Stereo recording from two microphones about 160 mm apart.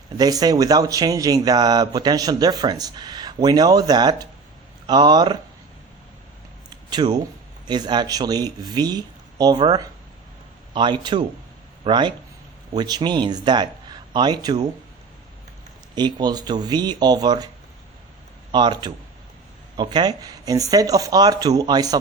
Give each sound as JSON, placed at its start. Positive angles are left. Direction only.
{"t": 0.2, "sound": "speech", "side_deg": -25}
{"t": 6.9, "sound": "speech", "side_deg": -25}
{"t": 10.8, "sound": "speech", "side_deg": -25}
{"t": 16.0, "sound": "speech", "side_deg": -25}
{"t": 18.5, "sound": "speech", "side_deg": -25}